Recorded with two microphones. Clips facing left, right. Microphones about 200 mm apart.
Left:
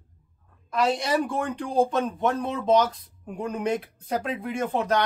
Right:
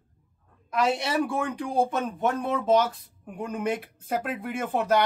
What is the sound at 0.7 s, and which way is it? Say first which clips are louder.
A man's voice: left 1 dB; 10° right (ahead or behind).